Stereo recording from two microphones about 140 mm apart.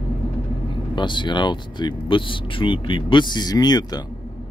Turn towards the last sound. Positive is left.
turn(degrees=30)  # may be behind; listen again after turning